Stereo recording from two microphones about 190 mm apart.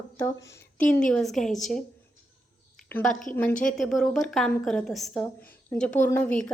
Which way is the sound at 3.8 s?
Centre (ahead or behind).